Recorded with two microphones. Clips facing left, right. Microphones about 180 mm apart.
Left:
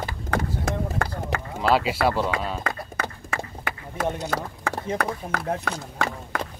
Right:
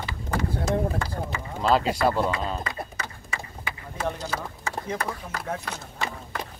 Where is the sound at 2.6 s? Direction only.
60° left (ahead or behind).